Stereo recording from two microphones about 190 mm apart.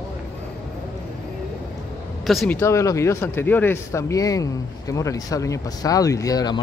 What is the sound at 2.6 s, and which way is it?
Speech, 15° left (ahead or behind).